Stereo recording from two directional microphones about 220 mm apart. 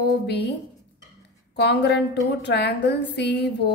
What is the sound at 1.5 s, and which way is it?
A woman's voice, 50° left (ahead or behind).